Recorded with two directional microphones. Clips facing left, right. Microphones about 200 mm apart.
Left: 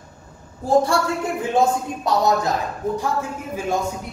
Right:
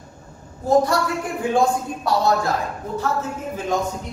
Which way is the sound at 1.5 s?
20° left (ahead or behind).